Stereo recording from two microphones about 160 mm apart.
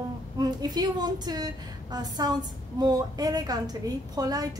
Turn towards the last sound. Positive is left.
turn(degrees=-25)  # may be behind; listen again after turning